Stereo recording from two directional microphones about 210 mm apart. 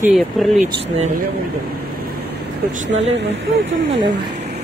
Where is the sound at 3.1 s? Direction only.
60° right (ahead or behind).